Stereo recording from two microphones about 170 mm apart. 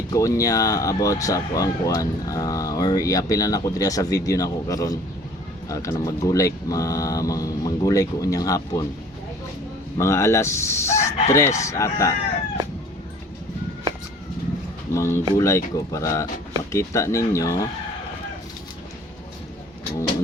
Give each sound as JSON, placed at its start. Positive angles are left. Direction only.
{"t": 0.1, "sound": "speech", "side_deg": 20}
{"t": 10.0, "sound": "chicken", "side_deg": 15}
{"t": 14.9, "sound": "chicken", "side_deg": 15}
{"t": 16.7, "sound": "speech", "side_deg": 15}